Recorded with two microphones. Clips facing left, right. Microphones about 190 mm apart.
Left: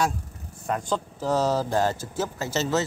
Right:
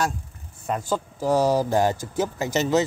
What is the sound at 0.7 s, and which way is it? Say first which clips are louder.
Speech: right 1 dB; 5° right (ahead or behind).